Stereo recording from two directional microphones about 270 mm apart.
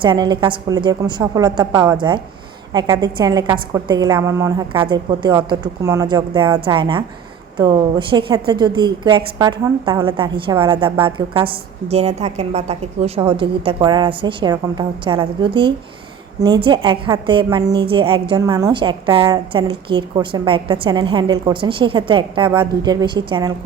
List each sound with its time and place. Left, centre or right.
0.0 s a woman's voice: centre